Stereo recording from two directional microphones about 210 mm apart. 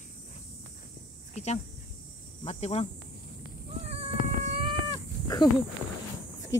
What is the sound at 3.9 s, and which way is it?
Cat, 30° right (ahead or behind).